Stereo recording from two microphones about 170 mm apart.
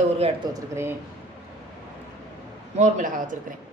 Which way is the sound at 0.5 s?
15° right (ahead or behind).